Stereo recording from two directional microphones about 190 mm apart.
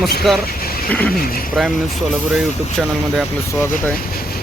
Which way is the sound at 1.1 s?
50° left (ahead or behind).